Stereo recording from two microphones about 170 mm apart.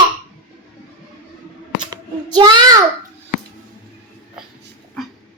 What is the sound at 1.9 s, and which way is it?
Child singing, 25° right (ahead or behind).